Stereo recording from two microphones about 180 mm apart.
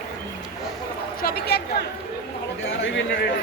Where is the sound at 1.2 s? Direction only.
60° left (ahead or behind).